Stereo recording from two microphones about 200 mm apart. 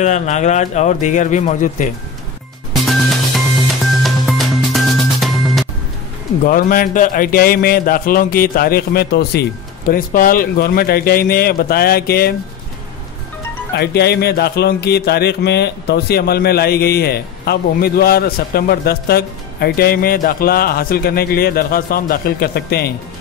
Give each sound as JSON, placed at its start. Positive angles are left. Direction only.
{"t": 0.0, "sound": "a man's voice", "side_deg": 35}
{"t": 2.7, "sound": "music", "side_deg": 0}
{"t": 6.4, "sound": "speech", "side_deg": 45}
{"t": 13.7, "sound": "speech", "side_deg": 55}